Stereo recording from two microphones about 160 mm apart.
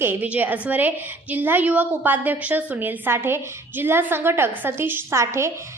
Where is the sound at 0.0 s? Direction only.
10° right (ahead or behind).